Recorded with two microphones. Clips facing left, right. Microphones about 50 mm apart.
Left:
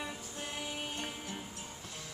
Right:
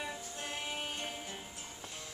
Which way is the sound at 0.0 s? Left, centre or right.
Centre.